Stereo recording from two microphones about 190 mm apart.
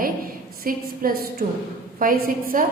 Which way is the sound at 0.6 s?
50° right (ahead or behind).